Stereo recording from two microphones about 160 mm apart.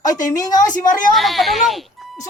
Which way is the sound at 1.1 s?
Centre (ahead or behind).